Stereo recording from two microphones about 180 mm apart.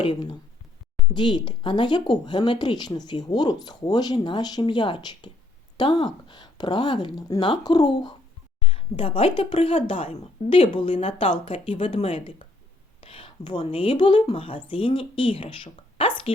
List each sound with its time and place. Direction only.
0.0 s a woman's voice: 30° left (ahead or behind)